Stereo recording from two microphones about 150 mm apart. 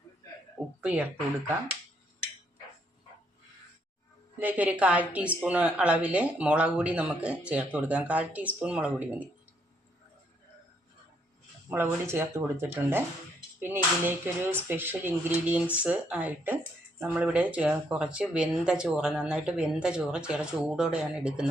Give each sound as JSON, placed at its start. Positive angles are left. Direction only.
{"t": 0.8, "sound": "speech", "side_deg": -10}
{"t": 4.4, "sound": "speech", "side_deg": -10}
{"t": 11.7, "sound": "speech", "side_deg": -15}